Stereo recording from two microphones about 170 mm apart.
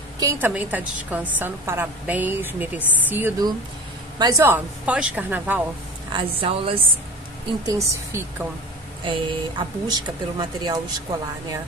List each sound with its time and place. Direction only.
0.2 s a woman's voice: 15° right (ahead or behind)
6.1 s a woman's voice: 30° right (ahead or behind)
7.6 s a woman's voice: 20° right (ahead or behind)
9.0 s speech: 30° right (ahead or behind)